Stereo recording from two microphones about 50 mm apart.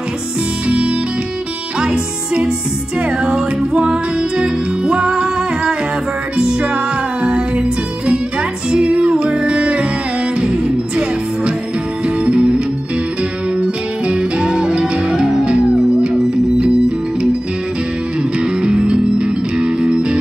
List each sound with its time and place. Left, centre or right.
0.7 s music: right
8.7 s music: right
18.4 s music: centre